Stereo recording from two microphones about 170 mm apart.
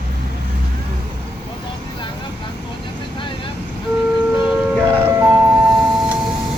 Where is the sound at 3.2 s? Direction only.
30° left (ahead or behind).